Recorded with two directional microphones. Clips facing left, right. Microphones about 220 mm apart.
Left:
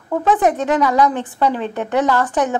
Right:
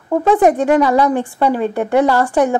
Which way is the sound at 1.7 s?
10° right (ahead or behind).